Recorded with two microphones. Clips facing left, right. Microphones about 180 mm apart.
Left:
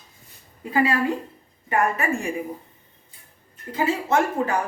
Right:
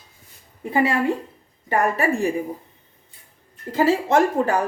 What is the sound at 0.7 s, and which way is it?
Speech, 25° right (ahead or behind).